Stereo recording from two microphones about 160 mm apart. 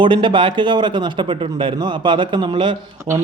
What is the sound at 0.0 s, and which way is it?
Speech, 30° right (ahead or behind).